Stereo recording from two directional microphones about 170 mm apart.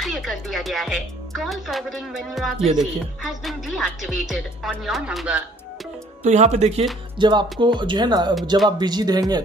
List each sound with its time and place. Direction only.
0.0 s speech: centre (ahead or behind)
6.2 s speech: 40° right (ahead or behind)
7.2 s speech: 25° right (ahead or behind)